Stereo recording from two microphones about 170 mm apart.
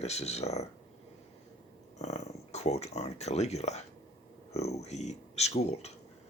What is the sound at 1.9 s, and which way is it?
Speech, 40° left (ahead or behind).